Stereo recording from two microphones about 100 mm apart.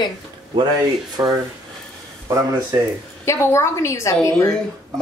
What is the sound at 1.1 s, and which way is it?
Speech, 40° right (ahead or behind).